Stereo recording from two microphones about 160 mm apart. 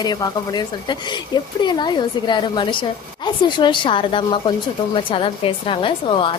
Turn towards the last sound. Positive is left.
turn(degrees=30)  # may be behind; listen again after turning